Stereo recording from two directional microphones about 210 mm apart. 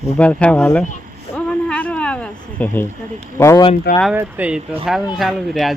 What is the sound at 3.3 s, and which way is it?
Speech, 15° left (ahead or behind).